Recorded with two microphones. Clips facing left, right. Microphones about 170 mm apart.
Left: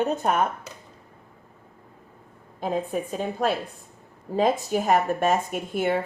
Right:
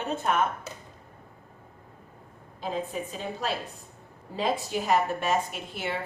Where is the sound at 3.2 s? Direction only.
50° left (ahead or behind).